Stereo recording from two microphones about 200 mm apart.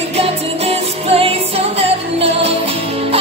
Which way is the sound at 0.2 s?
30° right (ahead or behind).